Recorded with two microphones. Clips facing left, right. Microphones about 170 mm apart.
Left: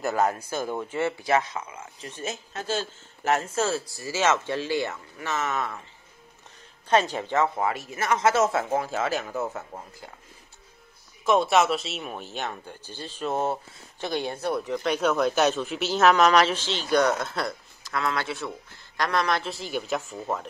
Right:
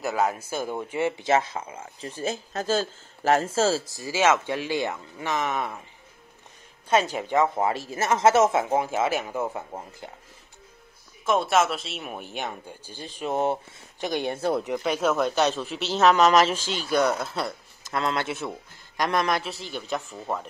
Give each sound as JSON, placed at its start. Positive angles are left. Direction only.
{"t": 0.0, "sound": "speech", "side_deg": 0}
{"t": 3.9, "sound": "speech", "side_deg": -15}
{"t": 6.9, "sound": "speech", "side_deg": -10}
{"t": 11.2, "sound": "speech", "side_deg": 0}
{"t": 12.1, "sound": "a man's voice", "side_deg": -10}
{"t": 14.7, "sound": "speech", "side_deg": -5}
{"t": 17.8, "sound": "a man's voice", "side_deg": -25}
{"t": 19.6, "sound": "speech", "side_deg": 5}